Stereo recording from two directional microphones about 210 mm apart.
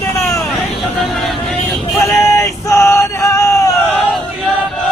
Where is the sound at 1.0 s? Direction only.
Centre (ahead or behind).